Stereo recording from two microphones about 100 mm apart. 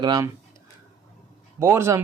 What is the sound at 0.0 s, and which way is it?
Speech, 40° right (ahead or behind).